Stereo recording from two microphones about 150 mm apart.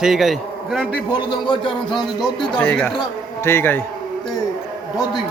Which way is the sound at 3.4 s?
15° left (ahead or behind).